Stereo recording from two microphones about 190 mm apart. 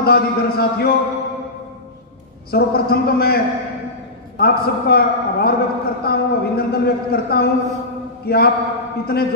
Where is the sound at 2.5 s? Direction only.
55° left (ahead or behind).